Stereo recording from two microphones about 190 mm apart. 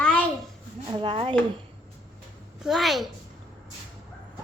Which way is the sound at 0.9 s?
25° right (ahead or behind).